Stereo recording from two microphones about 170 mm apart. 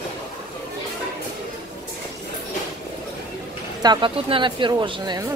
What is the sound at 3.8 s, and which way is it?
Speech, 25° right (ahead or behind).